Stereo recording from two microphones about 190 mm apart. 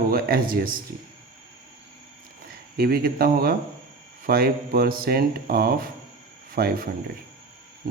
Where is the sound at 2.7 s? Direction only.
55° right (ahead or behind).